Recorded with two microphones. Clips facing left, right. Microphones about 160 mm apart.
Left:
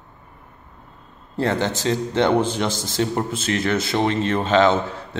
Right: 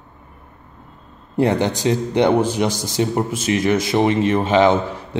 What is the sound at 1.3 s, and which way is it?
Speech, 15° right (ahead or behind).